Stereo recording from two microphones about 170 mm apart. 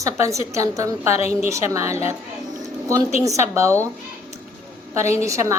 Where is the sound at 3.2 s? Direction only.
15° right (ahead or behind).